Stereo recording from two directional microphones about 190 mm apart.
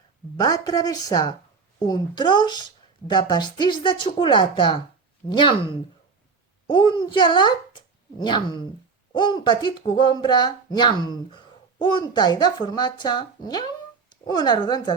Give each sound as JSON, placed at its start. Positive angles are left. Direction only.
{"t": 0.3, "sound": "speech", "side_deg": 20}